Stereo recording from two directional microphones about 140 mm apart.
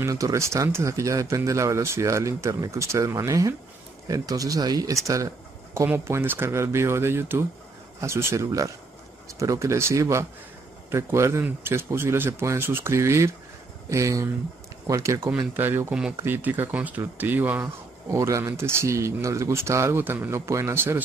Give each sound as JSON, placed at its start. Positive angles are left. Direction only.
{"t": 0.0, "sound": "speech", "side_deg": -20}